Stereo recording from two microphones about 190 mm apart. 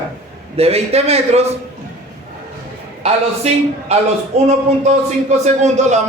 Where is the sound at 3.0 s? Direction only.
35° right (ahead or behind).